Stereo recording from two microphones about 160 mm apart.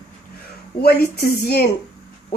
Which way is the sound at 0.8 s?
80° left.